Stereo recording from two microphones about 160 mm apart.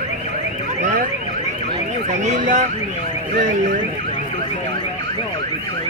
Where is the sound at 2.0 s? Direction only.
50° right (ahead or behind).